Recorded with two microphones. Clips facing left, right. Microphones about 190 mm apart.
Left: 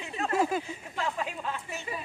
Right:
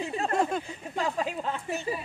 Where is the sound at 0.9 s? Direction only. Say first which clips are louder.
Right 4 dB; 35° right (ahead or behind).